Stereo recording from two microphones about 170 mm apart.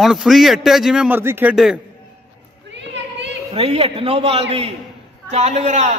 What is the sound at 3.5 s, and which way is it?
A man's voice, 35° right (ahead or behind).